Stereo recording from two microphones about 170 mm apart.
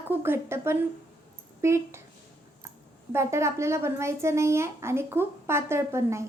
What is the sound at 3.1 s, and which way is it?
A child's voice, 15° right (ahead or behind).